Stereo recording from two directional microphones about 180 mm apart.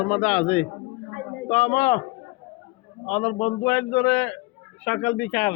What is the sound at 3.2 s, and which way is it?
Speech, 45° left (ahead or behind).